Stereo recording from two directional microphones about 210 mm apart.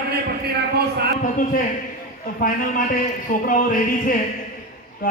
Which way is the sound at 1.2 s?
40° left (ahead or behind).